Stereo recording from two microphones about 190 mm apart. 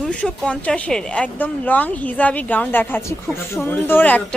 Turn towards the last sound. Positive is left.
turn(degrees=10)  # may be behind; listen again after turning